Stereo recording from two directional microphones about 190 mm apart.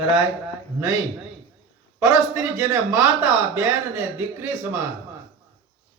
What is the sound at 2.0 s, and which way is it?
Speech, 15° right (ahead or behind).